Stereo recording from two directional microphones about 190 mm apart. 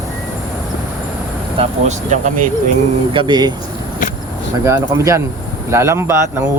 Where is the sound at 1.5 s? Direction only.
40° right (ahead or behind).